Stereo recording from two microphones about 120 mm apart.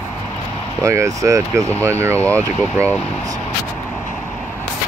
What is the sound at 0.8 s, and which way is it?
Speech, 25° right (ahead or behind).